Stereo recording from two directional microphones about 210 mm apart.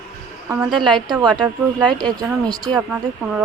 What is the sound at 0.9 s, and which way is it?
A woman's voice, 20° right (ahead or behind).